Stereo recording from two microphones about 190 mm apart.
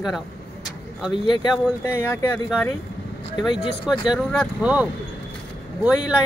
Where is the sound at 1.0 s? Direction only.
25° left (ahead or behind).